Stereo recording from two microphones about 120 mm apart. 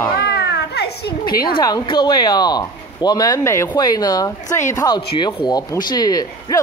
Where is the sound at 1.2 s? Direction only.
35° left (ahead or behind).